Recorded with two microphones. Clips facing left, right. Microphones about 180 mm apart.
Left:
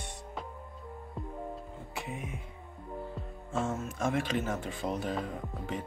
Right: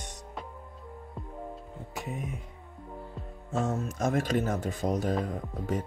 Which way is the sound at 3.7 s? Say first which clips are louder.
Right 4 dB; 40° right (ahead or behind).